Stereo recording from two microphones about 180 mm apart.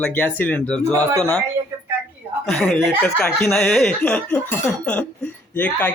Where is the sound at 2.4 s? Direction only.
Centre (ahead or behind).